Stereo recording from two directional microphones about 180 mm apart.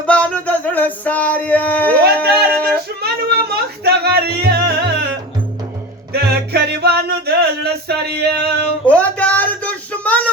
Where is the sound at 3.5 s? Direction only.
60° right (ahead or behind).